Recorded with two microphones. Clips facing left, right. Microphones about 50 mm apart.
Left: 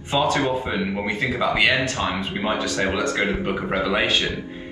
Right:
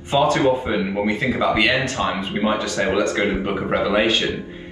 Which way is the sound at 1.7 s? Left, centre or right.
Right.